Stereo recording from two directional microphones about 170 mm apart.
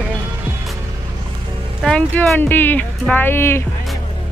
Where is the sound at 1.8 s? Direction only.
5° left (ahead or behind).